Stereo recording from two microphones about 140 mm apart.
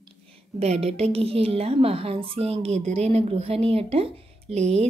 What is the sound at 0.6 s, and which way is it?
A woman's voice, 50° right (ahead or behind).